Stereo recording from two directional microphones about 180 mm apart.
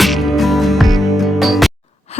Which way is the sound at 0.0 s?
Centre (ahead or behind).